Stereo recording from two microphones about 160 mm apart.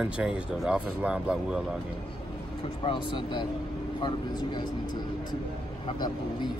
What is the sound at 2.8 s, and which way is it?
Speech, 30° left (ahead or behind).